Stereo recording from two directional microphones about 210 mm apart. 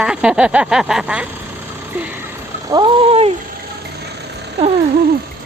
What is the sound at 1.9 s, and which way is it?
Vehicle, 10° right (ahead or behind).